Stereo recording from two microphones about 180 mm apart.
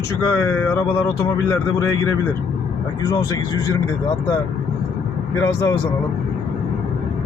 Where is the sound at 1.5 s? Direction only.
15° left (ahead or behind).